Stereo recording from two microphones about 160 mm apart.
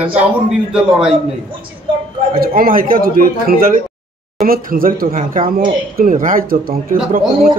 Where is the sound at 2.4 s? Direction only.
65° right (ahead or behind).